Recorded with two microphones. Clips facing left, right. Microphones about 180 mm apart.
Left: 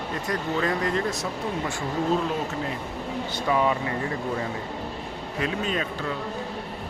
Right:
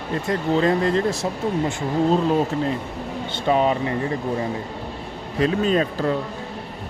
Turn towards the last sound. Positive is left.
turn(degrees=-35)  # may be behind; listen again after turning